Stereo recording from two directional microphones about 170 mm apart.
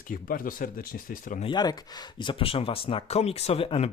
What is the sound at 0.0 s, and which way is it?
Speech, 55° left (ahead or behind).